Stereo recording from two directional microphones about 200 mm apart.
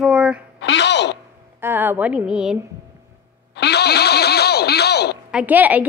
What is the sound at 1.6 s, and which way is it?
Speech, 10° right (ahead or behind).